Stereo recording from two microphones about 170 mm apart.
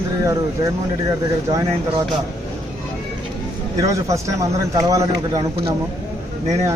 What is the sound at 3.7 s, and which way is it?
Speech, 20° right (ahead or behind).